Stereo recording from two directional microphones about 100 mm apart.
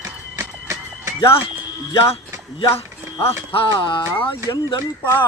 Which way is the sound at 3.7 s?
50° left (ahead or behind).